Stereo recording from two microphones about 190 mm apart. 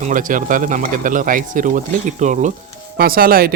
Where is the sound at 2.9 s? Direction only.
50° right (ahead or behind).